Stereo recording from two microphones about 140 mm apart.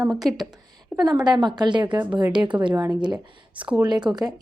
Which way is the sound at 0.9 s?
30° right (ahead or behind).